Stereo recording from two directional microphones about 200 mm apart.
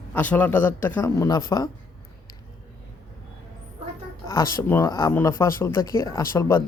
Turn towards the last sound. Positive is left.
turn(degrees=15)  # may be behind; listen again after turning